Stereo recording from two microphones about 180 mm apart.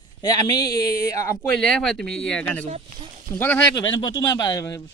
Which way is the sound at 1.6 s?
Centre (ahead or behind).